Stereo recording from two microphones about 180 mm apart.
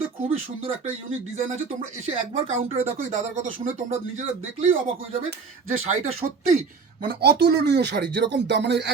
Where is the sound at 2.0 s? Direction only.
35° right (ahead or behind).